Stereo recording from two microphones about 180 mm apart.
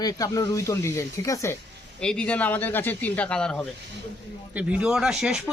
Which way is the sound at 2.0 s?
5° left (ahead or behind).